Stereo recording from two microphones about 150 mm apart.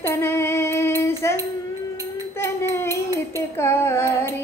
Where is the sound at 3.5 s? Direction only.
15° left (ahead or behind).